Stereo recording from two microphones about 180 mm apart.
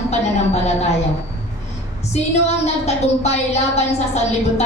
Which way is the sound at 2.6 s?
35° left (ahead or behind).